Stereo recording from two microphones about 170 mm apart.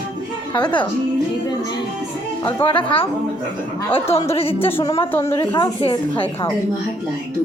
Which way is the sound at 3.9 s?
35° left (ahead or behind).